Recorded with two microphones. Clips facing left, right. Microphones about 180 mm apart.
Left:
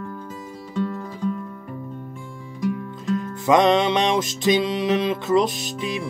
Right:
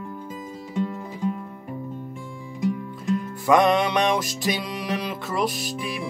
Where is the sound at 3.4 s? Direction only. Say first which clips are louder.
Left 2 dB; 20° left (ahead or behind).